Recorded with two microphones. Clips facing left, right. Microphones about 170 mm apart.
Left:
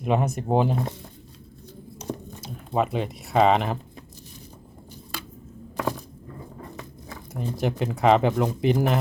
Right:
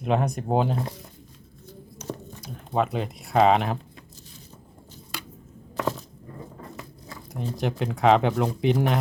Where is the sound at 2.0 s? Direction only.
15° left (ahead or behind).